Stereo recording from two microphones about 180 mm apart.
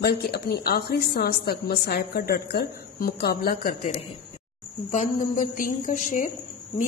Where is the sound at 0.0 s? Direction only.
60° left (ahead or behind).